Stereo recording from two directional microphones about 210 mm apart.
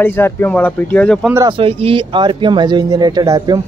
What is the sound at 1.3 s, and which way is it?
Speech, 25° right (ahead or behind).